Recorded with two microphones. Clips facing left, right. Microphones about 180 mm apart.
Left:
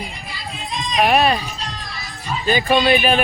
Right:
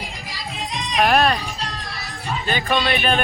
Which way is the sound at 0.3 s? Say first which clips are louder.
Even; 80° right.